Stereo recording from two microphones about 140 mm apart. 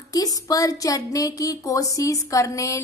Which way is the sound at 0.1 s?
25° left (ahead or behind).